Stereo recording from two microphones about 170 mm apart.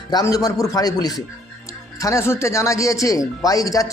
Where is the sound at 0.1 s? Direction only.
20° left (ahead or behind).